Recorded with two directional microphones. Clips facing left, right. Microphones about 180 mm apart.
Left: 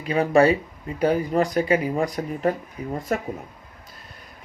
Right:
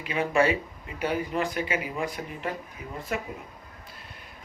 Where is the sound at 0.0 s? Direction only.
40° left (ahead or behind).